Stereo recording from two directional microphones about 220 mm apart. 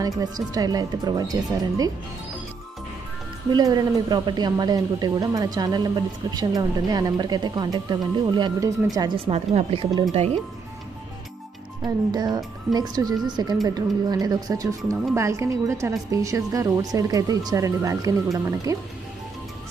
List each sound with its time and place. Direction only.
0.2 s a woman's voice: 15° right (ahead or behind)
3.5 s a woman's voice: 15° right (ahead or behind)
9.3 s a woman's voice: 30° right (ahead or behind)
11.8 s a woman's voice: 20° right (ahead or behind)